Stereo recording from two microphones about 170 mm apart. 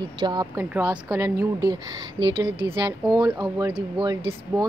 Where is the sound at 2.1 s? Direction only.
90° right.